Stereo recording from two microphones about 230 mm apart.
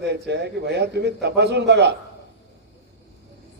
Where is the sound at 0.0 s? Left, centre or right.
Right.